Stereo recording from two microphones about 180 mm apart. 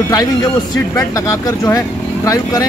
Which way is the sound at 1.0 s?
20° left (ahead or behind).